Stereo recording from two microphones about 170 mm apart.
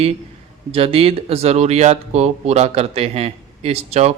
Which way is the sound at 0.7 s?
35° right (ahead or behind).